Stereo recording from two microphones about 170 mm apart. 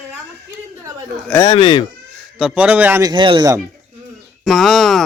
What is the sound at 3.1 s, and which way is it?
Speech, 30° right (ahead or behind).